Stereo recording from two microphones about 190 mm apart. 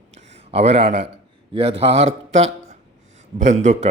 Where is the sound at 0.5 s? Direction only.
35° right (ahead or behind).